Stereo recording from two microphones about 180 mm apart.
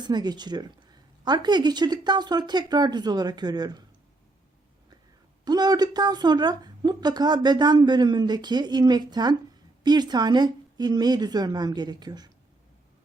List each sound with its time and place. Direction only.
0.0 s a woman's voice: 25° right (ahead or behind)
5.5 s a woman's voice: 20° right (ahead or behind)